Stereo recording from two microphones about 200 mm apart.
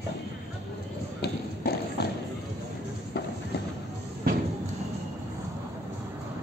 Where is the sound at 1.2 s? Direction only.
55° left (ahead or behind).